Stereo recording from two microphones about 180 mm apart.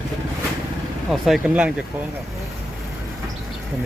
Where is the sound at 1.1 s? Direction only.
Centre (ahead or behind).